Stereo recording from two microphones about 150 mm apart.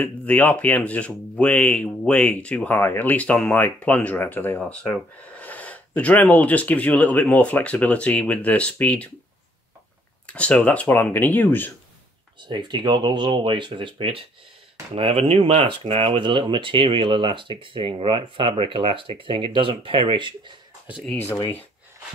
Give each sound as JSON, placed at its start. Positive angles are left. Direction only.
{"t": 0.0, "sound": "speech", "side_deg": 10}
{"t": 10.2, "sound": "speech", "side_deg": 10}
{"t": 12.4, "sound": "speech", "side_deg": -30}
{"t": 21.0, "sound": "speech", "side_deg": 10}